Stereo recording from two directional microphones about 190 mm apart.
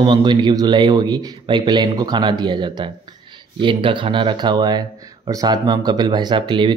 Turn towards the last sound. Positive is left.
turn(degrees=-25)  # may be behind; listen again after turning